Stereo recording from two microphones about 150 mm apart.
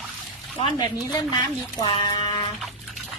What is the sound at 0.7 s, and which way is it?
Speech, 25° left (ahead or behind).